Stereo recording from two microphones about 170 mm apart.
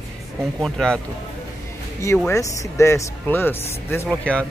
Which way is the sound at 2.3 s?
20° left (ahead or behind).